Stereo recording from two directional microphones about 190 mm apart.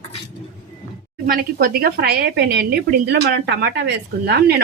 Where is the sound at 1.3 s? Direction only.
50° right (ahead or behind).